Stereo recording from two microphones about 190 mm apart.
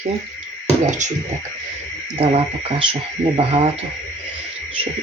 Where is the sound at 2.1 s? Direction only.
30° right (ahead or behind).